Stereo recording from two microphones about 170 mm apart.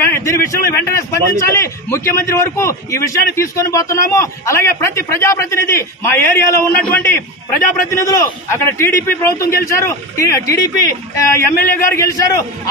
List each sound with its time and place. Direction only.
0.0 s a man's voice: 15° left (ahead or behind)